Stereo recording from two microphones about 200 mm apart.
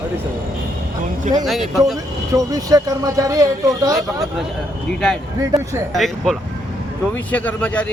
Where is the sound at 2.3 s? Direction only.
15° right (ahead or behind).